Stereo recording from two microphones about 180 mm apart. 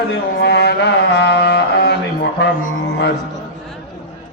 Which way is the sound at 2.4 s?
70° left (ahead or behind).